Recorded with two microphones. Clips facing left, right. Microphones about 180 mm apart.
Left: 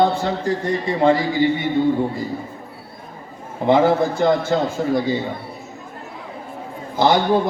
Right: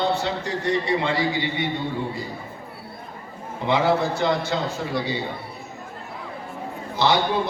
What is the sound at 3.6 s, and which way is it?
A man's voice, 50° left (ahead or behind).